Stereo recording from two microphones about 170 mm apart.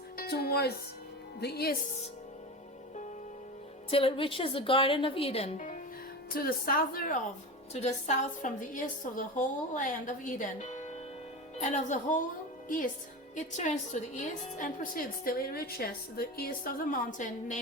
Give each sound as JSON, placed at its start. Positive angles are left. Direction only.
{"t": 0.2, "sound": "speech", "side_deg": 65}
{"t": 3.8, "sound": "a woman's voice", "side_deg": 35}
{"t": 6.3, "sound": "a woman's voice", "side_deg": 60}
{"t": 7.7, "sound": "a woman's voice", "side_deg": 40}